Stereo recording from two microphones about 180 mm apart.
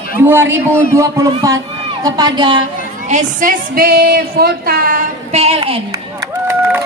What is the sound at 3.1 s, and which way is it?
Speech, 50° right (ahead or behind).